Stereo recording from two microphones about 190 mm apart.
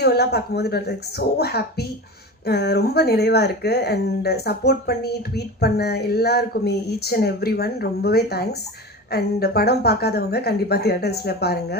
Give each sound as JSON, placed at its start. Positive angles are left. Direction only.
{"t": 0.0, "sound": "speech", "side_deg": 60}